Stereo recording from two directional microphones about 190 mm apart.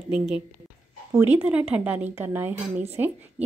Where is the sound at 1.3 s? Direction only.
5° right (ahead or behind).